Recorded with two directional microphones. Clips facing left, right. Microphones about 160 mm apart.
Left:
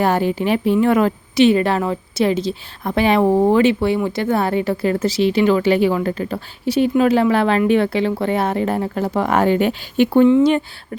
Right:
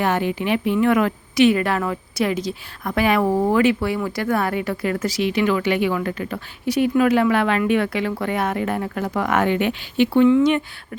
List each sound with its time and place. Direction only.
0.0 s a woman's voice: 35° left (ahead or behind)
10.2 s speech: 30° left (ahead or behind)